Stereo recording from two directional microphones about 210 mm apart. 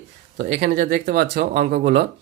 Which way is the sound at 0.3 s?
50° right (ahead or behind).